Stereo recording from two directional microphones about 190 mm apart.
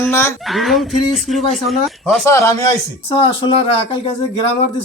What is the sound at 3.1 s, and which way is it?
Speech, 25° left (ahead or behind).